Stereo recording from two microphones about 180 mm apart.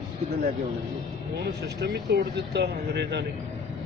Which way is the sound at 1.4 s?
65° right (ahead or behind).